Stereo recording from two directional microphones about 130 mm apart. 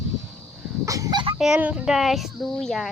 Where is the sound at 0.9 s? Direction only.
25° right (ahead or behind).